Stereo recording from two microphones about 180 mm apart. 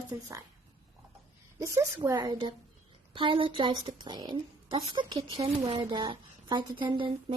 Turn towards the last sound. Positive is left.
turn(degrees=-25)  # may be behind; listen again after turning